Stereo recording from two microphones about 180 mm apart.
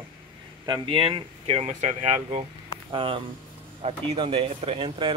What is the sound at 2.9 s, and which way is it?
Speech, 30° right (ahead or behind).